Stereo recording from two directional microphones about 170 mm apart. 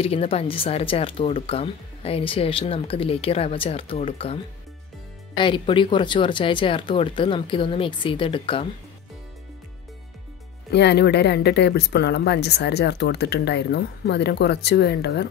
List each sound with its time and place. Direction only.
0.0 s speech: 35° left (ahead or behind)
10.7 s speech: 80° left